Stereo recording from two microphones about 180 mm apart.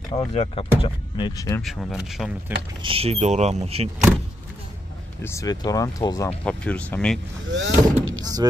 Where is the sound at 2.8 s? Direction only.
30° right (ahead or behind).